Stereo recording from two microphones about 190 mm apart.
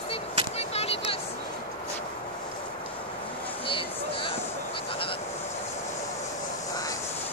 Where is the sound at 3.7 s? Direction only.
25° left (ahead or behind).